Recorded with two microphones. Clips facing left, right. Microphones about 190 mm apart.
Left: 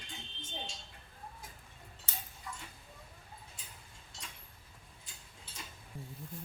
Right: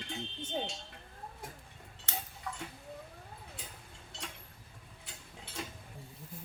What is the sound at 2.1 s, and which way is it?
Tick-tock, 70° right (ahead or behind).